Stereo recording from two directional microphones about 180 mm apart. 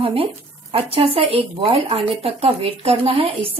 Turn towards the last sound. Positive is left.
turn(degrees=-30)  # may be behind; listen again after turning